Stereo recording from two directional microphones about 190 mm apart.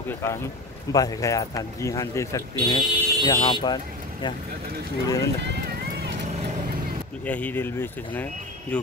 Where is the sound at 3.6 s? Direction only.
20° left (ahead or behind).